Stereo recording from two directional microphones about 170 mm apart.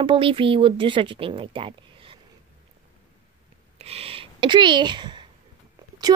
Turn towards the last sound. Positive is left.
turn(degrees=-30)  # may be behind; listen again after turning